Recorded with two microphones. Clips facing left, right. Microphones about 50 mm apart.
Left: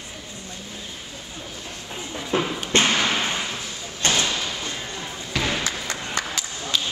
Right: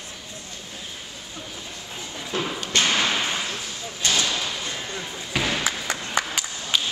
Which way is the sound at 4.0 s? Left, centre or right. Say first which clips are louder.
Left 2 dB; left.